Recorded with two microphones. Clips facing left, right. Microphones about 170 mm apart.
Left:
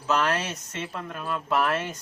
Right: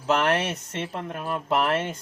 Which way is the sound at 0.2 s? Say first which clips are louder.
Right 3 dB; 25° right (ahead or behind).